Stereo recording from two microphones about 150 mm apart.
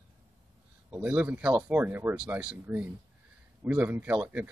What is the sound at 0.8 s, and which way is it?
Speech, 15° right (ahead or behind).